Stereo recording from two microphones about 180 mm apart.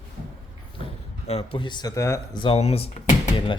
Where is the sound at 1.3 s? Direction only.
30° left (ahead or behind); by 2.4 s 15° left (ahead or behind).